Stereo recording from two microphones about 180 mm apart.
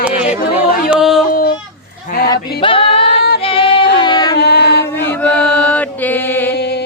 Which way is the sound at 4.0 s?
25° left (ahead or behind).